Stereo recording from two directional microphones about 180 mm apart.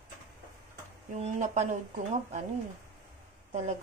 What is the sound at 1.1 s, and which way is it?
Speech, 40° right (ahead or behind).